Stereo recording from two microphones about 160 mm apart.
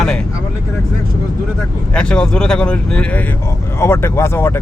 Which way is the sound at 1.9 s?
5° left (ahead or behind).